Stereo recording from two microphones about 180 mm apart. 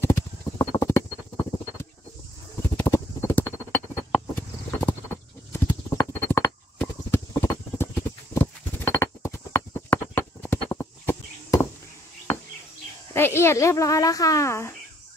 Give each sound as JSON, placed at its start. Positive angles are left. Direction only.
{"t": 0.0, "sound": "clip-clop", "side_deg": 15}
{"t": 2.8, "sound": "a sound", "side_deg": 15}
{"t": 4.4, "sound": "clip-clop", "side_deg": 10}
{"t": 13.1, "sound": "speech", "side_deg": 15}